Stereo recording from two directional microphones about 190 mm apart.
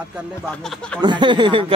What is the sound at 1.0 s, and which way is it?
Speech, 25° right (ahead or behind).